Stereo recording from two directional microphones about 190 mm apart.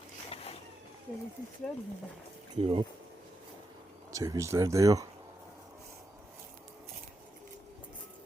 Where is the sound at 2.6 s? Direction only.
25° right (ahead or behind).